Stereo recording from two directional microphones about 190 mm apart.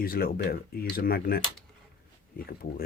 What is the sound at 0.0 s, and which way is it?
Speech, 50° left (ahead or behind).